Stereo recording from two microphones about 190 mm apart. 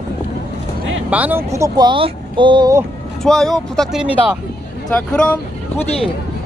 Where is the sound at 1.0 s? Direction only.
10° right (ahead or behind); by 2.8 s 25° right (ahead or behind).